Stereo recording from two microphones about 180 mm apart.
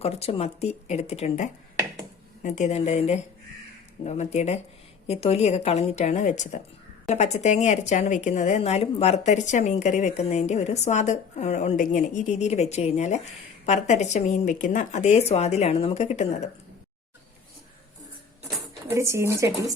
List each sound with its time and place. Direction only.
0.0 s speech: 35° left (ahead or behind)
18.9 s speech: 15° right (ahead or behind)